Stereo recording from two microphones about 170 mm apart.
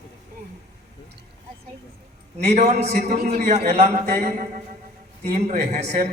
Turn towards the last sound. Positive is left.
turn(degrees=-40)  # may be behind; listen again after turning